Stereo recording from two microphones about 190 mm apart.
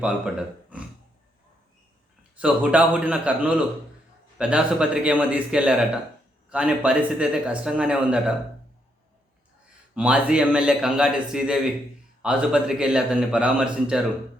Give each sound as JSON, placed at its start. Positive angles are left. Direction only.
{"t": 0.0, "sound": "speech", "side_deg": -5}
{"t": 2.4, "sound": "a man's voice", "side_deg": -5}
{"t": 9.9, "sound": "speech", "side_deg": -5}